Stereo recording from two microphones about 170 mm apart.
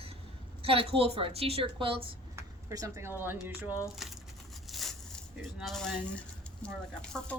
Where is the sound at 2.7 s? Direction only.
20° right (ahead or behind).